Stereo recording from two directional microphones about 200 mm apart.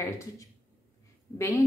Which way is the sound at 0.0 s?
15° left (ahead or behind).